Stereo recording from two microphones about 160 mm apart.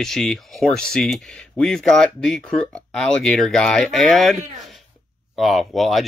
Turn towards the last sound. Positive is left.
turn(degrees=0)  # may be behind; listen again after turning